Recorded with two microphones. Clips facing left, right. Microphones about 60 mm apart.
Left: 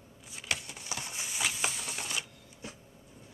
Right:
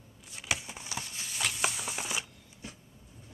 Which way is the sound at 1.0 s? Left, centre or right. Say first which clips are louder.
Left 2 dB; centre.